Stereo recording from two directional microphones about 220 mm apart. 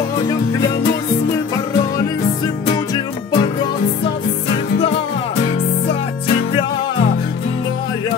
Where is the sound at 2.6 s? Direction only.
20° left (ahead or behind).